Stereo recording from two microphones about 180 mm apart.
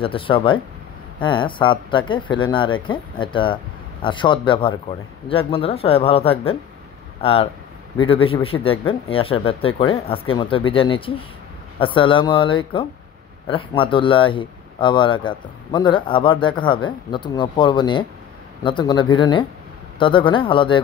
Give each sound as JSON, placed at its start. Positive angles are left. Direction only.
{"t": 0.0, "sound": "speech", "side_deg": 30}